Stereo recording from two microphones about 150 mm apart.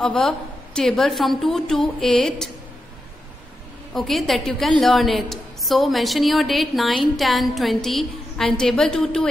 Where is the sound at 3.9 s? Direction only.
Centre (ahead or behind).